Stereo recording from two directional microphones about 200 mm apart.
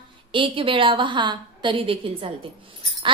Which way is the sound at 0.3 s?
25° right (ahead or behind).